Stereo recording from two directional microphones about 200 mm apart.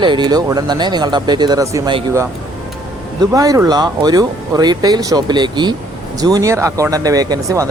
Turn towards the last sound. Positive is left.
turn(degrees=-15)  # may be behind; listen again after turning